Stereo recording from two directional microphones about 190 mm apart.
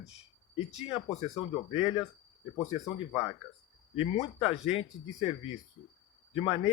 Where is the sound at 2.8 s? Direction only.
20° left (ahead or behind).